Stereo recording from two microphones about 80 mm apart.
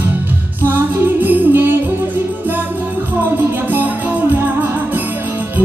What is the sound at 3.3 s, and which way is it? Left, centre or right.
Music, right.